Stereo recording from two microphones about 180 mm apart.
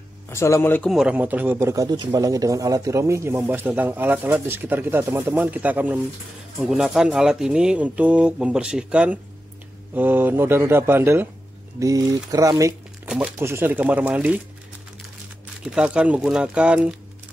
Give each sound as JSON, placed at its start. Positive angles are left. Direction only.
{"t": 0.3, "sound": "speech", "side_deg": 15}
{"t": 0.9, "sound": "speech", "side_deg": -10}
{"t": 15.6, "sound": "speech", "side_deg": -5}